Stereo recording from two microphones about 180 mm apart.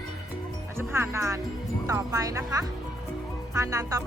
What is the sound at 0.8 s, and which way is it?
Speech, 15° right (ahead or behind).